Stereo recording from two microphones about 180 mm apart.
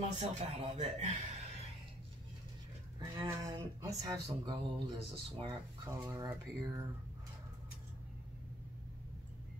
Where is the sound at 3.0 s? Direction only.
20° right (ahead or behind).